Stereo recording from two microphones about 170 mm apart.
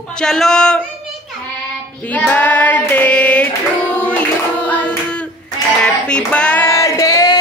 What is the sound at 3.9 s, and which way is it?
Singing, 5° left (ahead or behind).